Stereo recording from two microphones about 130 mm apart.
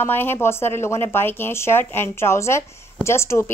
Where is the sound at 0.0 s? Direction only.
15° left (ahead or behind).